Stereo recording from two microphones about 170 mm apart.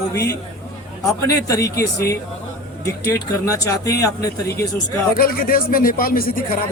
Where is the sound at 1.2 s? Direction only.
20° left (ahead or behind).